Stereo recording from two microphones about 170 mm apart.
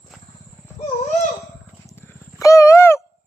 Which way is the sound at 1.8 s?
20° left (ahead or behind).